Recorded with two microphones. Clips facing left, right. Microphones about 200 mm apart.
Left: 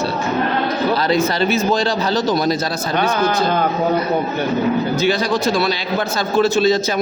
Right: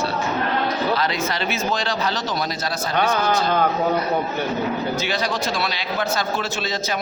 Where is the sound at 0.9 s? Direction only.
35° left (ahead or behind).